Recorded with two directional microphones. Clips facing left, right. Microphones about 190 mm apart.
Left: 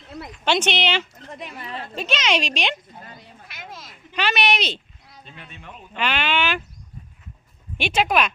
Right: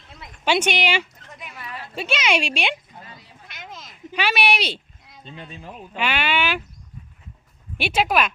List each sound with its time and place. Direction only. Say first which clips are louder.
0.4 s a woman's voice: right 1 dB; 10° right (ahead or behind)
1.3 s a sound: left 4 dB; 35° left (ahead or behind)
2.0 s a woman's voice: right 1 dB; 10° right (ahead or behind)
3.5 s a sound: even; centre (ahead or behind)
4.2 s speech: even; 10° right (ahead or behind)
5.4 s speech: right 5 dB; 30° right (ahead or behind)
6.0 s a woman's voice: even; 10° right (ahead or behind)
7.8 s a woman's voice: even; 5° right (ahead or behind)